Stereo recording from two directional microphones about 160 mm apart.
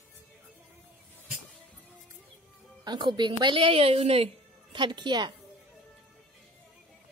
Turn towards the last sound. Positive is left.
turn(degrees=-30)  # may be behind; listen again after turning